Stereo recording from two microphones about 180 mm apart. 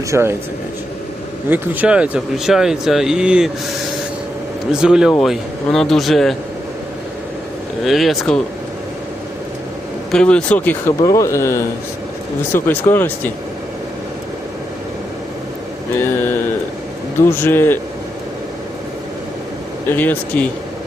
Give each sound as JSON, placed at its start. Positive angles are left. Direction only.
{"t": 0.1, "sound": "speech", "side_deg": -15}
{"t": 1.5, "sound": "speech", "side_deg": -10}
{"t": 4.7, "sound": "speech", "side_deg": -5}
{"t": 7.9, "sound": "speech", "side_deg": 0}
{"t": 10.1, "sound": "speech", "side_deg": 5}
{"t": 16.0, "sound": "speech", "side_deg": 10}
{"t": 19.9, "sound": "speech", "side_deg": 10}